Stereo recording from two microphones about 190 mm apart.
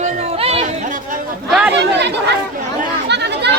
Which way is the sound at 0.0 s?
30° right (ahead or behind).